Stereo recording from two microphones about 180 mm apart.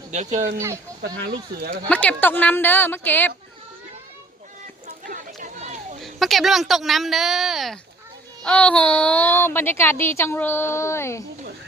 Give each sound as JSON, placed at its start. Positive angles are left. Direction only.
{"t": 0.1, "sound": "a child's voice", "side_deg": -40}
{"t": 0.5, "sound": "speech", "side_deg": -15}
{"t": 1.9, "sound": "a child's voice", "side_deg": 10}
{"t": 5.0, "sound": "chatter", "side_deg": -45}
{"t": 6.0, "sound": "a woman's voice", "side_deg": 0}